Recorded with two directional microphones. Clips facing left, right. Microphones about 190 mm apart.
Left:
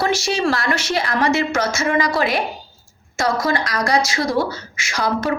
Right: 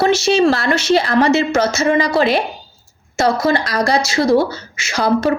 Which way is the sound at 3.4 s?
30° right (ahead or behind).